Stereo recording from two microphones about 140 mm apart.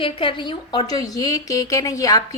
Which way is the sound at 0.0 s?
40° left (ahead or behind).